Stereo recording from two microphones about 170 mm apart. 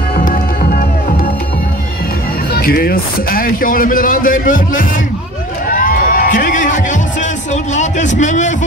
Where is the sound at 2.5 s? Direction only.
60° left (ahead or behind).